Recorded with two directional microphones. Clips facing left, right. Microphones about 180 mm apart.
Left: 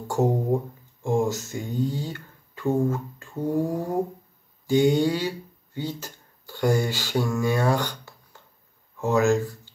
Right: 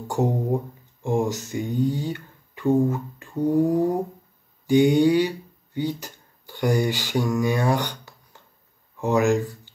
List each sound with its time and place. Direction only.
0.2 s speech: 15° right (ahead or behind)